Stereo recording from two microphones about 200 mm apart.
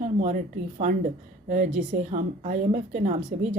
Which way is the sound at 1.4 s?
40° right (ahead or behind).